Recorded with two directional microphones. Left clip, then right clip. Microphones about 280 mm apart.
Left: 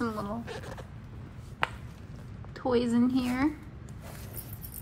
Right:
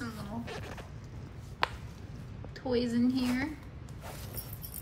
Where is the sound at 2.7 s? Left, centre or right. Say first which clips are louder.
Left 4 dB; centre.